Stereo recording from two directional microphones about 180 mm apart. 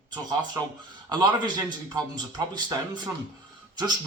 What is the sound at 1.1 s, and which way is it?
A man's voice, 25° right (ahead or behind).